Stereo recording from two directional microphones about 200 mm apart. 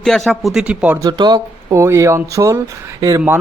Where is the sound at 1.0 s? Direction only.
20° right (ahead or behind).